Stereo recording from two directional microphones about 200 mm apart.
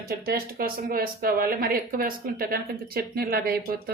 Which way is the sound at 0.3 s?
50° right (ahead or behind).